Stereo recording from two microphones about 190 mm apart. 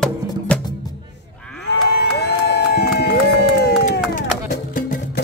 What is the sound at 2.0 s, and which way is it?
Crowd, 60° left (ahead or behind).